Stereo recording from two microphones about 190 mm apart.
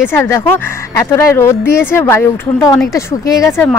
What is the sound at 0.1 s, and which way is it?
Speech, 15° left (ahead or behind).